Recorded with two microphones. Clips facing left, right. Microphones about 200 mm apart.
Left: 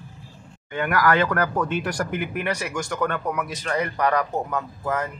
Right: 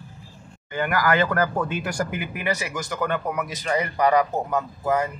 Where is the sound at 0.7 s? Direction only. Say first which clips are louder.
Left 1 dB; centre (ahead or behind).